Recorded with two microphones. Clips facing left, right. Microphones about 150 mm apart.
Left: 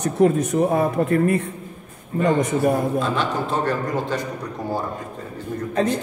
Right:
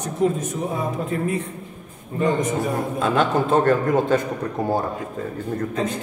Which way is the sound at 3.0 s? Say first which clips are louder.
Right 4 dB; 50° right (ahead or behind).